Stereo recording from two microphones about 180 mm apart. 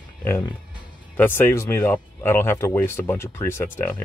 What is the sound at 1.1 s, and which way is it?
Speech, 10° left (ahead or behind).